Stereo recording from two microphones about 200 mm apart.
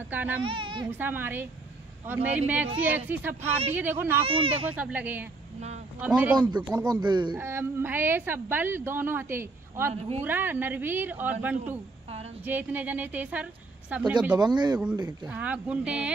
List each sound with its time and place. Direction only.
0.1 s speech: 10° right (ahead or behind)
0.4 s speech: 25° right (ahead or behind)
0.8 s a woman's voice: 10° right (ahead or behind)
4.2 s speech: 25° right (ahead or behind)
4.6 s a woman's voice: 10° right (ahead or behind)
6.7 s a woman's voice: 20° right (ahead or behind)
14.3 s speech: 20° right (ahead or behind)
15.2 s speech: 5° right (ahead or behind)